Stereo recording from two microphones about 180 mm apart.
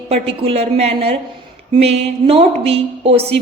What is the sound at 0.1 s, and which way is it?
A woman's voice, 30° right (ahead or behind).